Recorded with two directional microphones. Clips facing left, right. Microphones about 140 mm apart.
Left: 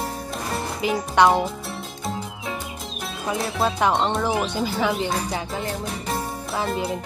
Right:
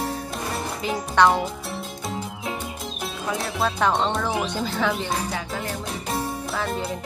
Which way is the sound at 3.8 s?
10° left (ahead or behind).